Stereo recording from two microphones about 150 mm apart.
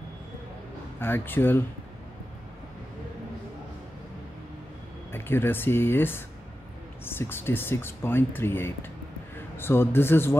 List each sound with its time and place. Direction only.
0.9 s speech: 15° left (ahead or behind)
5.1 s speech: 15° left (ahead or behind)